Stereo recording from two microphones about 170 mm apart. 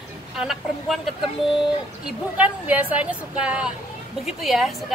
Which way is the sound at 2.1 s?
10° right (ahead or behind).